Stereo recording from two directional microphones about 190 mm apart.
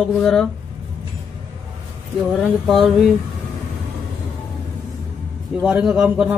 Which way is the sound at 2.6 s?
Centre (ahead or behind).